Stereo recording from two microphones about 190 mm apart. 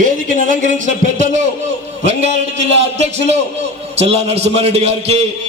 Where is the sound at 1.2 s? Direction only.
40° right (ahead or behind).